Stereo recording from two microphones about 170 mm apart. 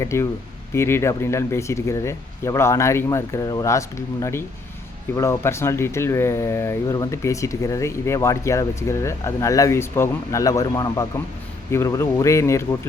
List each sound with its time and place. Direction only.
0.0 s speech: 15° left (ahead or behind)